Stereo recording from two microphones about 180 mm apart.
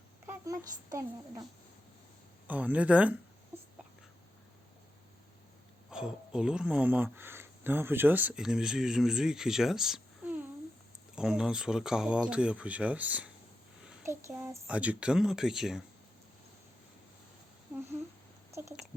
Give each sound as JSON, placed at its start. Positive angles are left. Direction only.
{"t": 0.3, "sound": "a child's voice", "side_deg": -20}
{"t": 2.5, "sound": "a child's voice", "side_deg": -10}
{"t": 5.9, "sound": "speech", "side_deg": -5}
{"t": 13.8, "sound": "a sound", "side_deg": -5}
{"t": 14.1, "sound": "speech", "side_deg": -15}
{"t": 18.5, "sound": "speech", "side_deg": -15}